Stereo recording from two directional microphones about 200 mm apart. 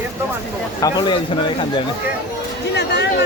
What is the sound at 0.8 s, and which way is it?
Speech, 20° left (ahead or behind).